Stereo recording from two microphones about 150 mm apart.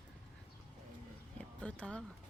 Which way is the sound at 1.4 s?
5° left (ahead or behind).